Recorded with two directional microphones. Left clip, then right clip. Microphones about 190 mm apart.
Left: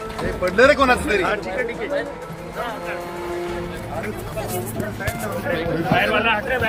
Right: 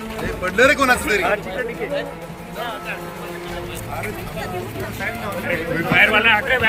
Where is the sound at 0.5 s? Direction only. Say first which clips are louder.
Even; 30° left (ahead or behind).